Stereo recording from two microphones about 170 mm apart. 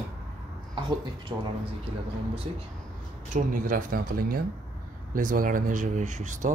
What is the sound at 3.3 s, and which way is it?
Speech, 50° right (ahead or behind).